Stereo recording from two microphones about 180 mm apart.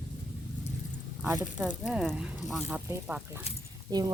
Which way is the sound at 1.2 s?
10° right (ahead or behind).